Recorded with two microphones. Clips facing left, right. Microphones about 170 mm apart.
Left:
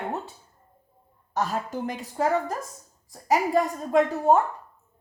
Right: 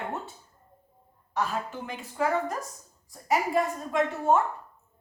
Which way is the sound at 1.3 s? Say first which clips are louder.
Left 3 dB; 40° left (ahead or behind).